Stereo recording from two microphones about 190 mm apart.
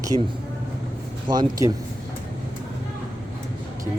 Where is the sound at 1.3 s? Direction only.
20° right (ahead or behind).